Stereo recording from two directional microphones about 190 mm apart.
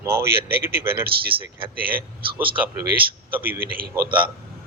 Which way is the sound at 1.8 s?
50° right (ahead or behind).